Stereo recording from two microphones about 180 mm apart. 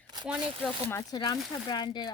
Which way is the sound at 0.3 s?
5° right (ahead or behind).